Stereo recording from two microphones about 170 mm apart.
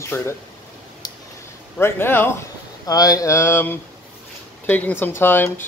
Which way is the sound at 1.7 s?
15° left (ahead or behind).